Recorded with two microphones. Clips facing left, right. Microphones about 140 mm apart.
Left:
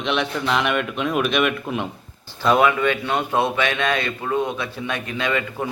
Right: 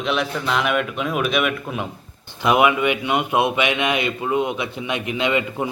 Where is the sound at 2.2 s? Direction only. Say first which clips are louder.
Even; 15° right (ahead or behind).